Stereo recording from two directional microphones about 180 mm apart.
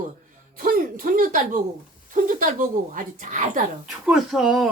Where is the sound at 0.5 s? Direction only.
50° right (ahead or behind).